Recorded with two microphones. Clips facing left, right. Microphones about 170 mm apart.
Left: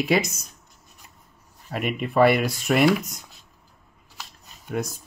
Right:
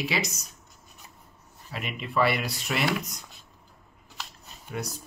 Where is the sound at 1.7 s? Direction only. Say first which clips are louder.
Left 7 dB; 50° left (ahead or behind).